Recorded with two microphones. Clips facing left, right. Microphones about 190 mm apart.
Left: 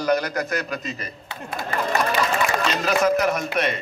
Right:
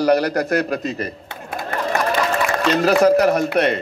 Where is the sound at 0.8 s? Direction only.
60° right (ahead or behind).